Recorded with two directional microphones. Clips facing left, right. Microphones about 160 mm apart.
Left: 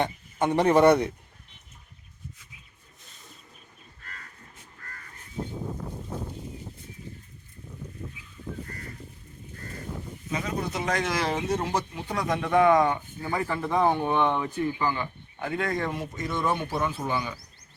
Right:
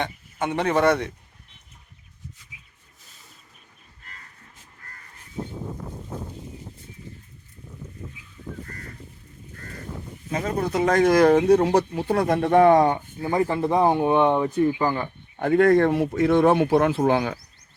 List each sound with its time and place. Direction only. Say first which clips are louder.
0.0 s speech: left 1 dB; 15° left (ahead or behind)
10.3 s speech: right 6 dB; 50° right (ahead or behind); by 13.9 s 25° right (ahead or behind)
13.9 s speech: right 6 dB; 15° right (ahead or behind)
14.3 s speech: right 7 dB; 35° right (ahead or behind); by 17.3 s 80° right